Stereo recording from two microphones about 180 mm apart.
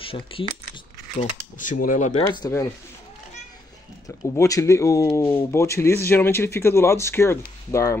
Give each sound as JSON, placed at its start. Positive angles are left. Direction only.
{"t": 0.0, "sound": "speech", "side_deg": 30}
{"t": 1.6, "sound": "speech", "side_deg": 50}
{"t": 2.3, "sound": "speech", "side_deg": 20}
{"t": 4.4, "sound": "speech", "side_deg": 15}